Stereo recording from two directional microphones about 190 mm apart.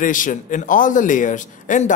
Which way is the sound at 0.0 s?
45° left (ahead or behind).